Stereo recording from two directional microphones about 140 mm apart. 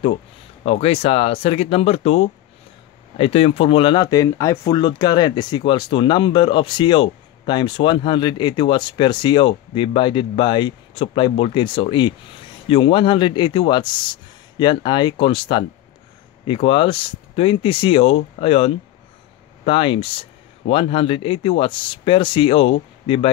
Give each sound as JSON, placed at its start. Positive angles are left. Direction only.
{"t": 0.7, "sound": "speech", "side_deg": 45}